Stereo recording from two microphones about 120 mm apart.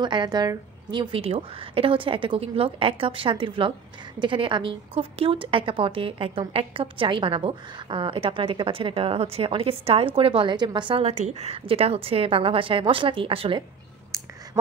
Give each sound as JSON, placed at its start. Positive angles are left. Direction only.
{"t": 0.0, "sound": "a woman's voice", "side_deg": -40}
{"t": 11.1, "sound": "a woman's voice", "side_deg": -65}